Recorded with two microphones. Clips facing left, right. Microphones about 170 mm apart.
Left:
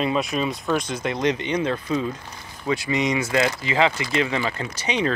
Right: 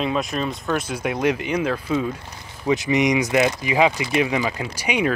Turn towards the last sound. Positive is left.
turn(degrees=-10)  # may be behind; listen again after turning